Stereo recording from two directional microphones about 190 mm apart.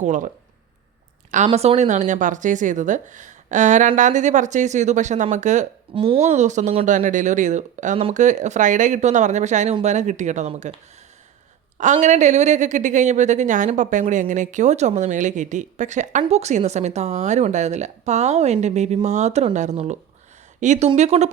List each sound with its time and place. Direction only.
0.0 s speech: 40° right (ahead or behind)
1.5 s speech: 35° right (ahead or behind)
11.8 s speech: 40° right (ahead or behind)